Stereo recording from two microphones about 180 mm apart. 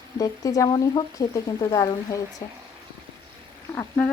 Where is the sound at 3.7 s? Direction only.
10° left (ahead or behind).